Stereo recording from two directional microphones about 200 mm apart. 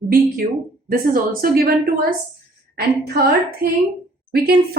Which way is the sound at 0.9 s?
45° right (ahead or behind).